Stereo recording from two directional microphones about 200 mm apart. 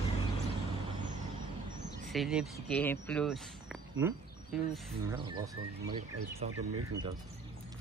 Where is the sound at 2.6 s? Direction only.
10° left (ahead or behind).